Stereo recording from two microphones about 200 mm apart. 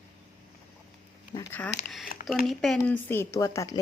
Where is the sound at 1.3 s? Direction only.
10° left (ahead or behind).